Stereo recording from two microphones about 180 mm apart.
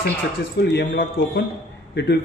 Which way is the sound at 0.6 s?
65° left (ahead or behind).